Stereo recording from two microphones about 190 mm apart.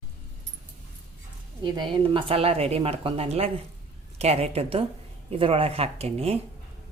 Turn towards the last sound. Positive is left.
turn(degrees=-30)  # may be behind; listen again after turning